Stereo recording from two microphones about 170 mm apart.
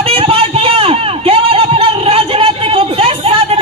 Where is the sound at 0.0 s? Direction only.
35° right (ahead or behind).